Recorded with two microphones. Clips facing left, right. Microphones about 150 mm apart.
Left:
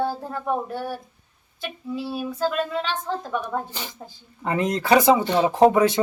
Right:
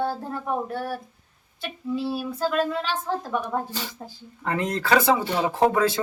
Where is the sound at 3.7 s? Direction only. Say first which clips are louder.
Right 2 dB; 15° left (ahead or behind).